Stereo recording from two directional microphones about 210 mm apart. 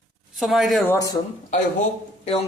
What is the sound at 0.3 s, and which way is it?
Speech, centre (ahead or behind).